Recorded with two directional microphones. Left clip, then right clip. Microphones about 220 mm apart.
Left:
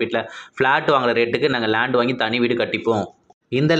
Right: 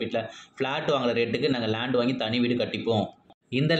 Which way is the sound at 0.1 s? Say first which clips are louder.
Left 6 dB; 20° left (ahead or behind).